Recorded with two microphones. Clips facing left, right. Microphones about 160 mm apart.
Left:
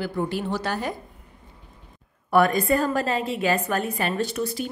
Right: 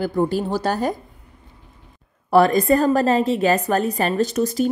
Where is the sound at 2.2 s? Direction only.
35° right (ahead or behind).